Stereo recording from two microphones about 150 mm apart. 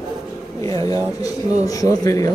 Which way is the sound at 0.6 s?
25° left (ahead or behind).